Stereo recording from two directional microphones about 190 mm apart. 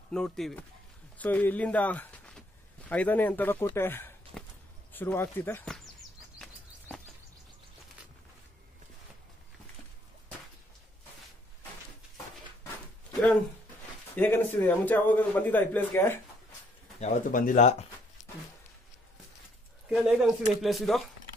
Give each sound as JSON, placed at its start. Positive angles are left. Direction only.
{"t": 0.1, "sound": "a man's voice", "side_deg": 5}
{"t": 4.3, "sound": "a sound", "side_deg": 0}
{"t": 4.9, "sound": "a man's voice", "side_deg": 10}
{"t": 14.1, "sound": "a man's voice", "side_deg": 10}
{"t": 17.0, "sound": "speech", "side_deg": 40}
{"t": 19.9, "sound": "speech", "side_deg": 0}